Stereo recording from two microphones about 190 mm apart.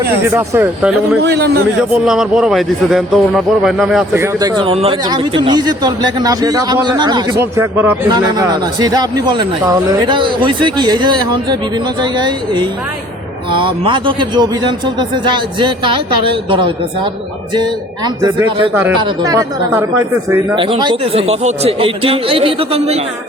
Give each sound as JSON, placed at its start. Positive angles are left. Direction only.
{"t": 0.3, "sound": "speech", "side_deg": -10}
{"t": 1.2, "sound": "a man's voice", "side_deg": -60}
{"t": 1.9, "sound": "a man's voice", "side_deg": -5}
{"t": 4.1, "sound": "speech", "side_deg": -15}